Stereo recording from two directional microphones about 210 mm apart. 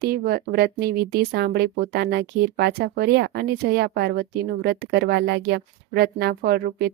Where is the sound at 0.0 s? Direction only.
45° right (ahead or behind).